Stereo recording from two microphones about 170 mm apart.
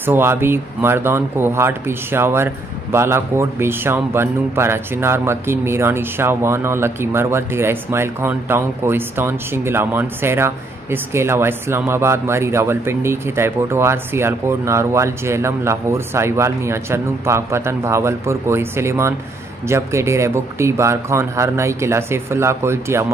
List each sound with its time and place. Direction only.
0.0 s speech: 15° right (ahead or behind)